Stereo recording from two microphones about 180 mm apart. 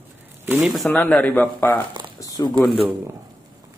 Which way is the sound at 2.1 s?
20° left (ahead or behind).